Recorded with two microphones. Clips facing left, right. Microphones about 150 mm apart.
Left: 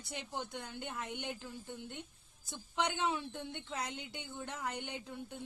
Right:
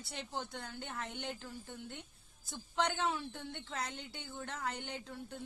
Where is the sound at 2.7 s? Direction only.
15° left (ahead or behind).